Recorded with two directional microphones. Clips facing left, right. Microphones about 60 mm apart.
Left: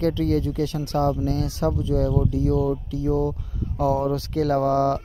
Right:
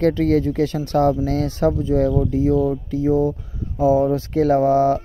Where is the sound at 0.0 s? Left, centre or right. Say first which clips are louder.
Right 5 dB; right.